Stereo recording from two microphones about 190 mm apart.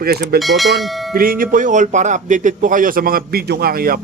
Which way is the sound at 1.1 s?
50° right (ahead or behind).